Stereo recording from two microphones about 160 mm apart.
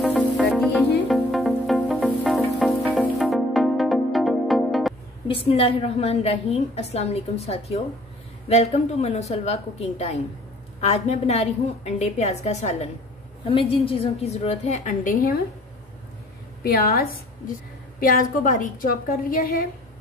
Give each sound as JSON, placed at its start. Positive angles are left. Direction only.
{"t": 0.0, "sound": "music", "side_deg": 0}
{"t": 5.3, "sound": "a woman's voice", "side_deg": 35}
{"t": 13.5, "sound": "a woman's voice", "side_deg": 35}
{"t": 16.6, "sound": "a woman's voice", "side_deg": 70}